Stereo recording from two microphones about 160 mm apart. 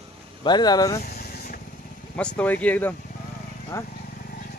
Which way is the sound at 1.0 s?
70° left (ahead or behind).